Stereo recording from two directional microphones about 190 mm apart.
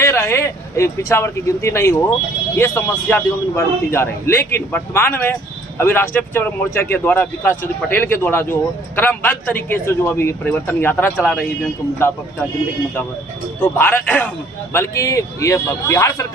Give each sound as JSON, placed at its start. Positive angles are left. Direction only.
{"t": 0.0, "sound": "a man's voice", "side_deg": 15}
{"t": 13.6, "sound": "a man's voice", "side_deg": 10}